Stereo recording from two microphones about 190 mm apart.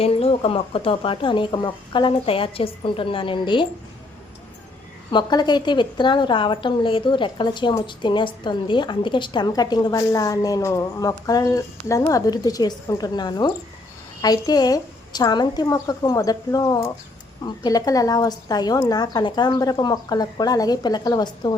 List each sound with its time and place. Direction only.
0.0 s a woman's voice: 30° left (ahead or behind)
5.1 s a woman's voice: 20° left (ahead or behind)